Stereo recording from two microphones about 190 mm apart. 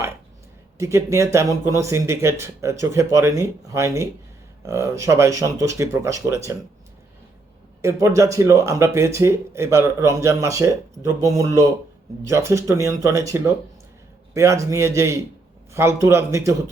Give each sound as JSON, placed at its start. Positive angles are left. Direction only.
{"t": 0.8, "sound": "speech", "side_deg": -15}
{"t": 7.8, "sound": "speech", "side_deg": -15}